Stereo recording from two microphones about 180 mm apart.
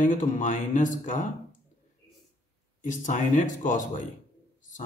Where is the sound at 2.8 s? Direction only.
45° left (ahead or behind).